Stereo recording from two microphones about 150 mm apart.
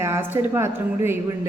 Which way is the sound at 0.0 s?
15° right (ahead or behind).